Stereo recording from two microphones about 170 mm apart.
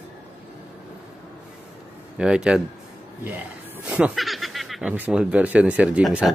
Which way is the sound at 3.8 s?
5° right (ahead or behind).